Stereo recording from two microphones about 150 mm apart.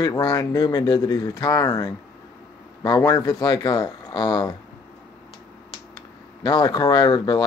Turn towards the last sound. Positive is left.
turn(degrees=30)  # may be behind; listen again after turning